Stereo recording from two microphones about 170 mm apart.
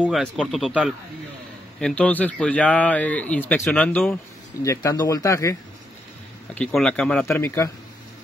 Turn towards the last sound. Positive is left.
turn(degrees=15)  # may be behind; listen again after turning